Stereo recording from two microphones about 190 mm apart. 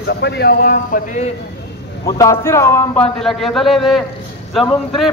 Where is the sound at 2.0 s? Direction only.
15° left (ahead or behind).